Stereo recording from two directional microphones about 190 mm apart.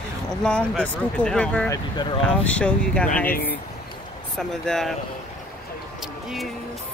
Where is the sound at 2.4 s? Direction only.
5° left (ahead or behind).